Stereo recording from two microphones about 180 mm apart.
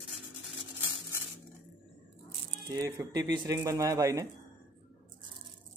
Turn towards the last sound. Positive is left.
turn(degrees=-20)  # may be behind; listen again after turning